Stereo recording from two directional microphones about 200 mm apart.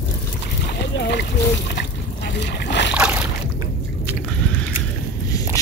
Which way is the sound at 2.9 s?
5° right (ahead or behind).